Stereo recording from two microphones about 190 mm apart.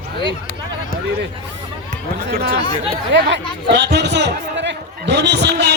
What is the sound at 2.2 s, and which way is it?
Speech, 55° right (ahead or behind).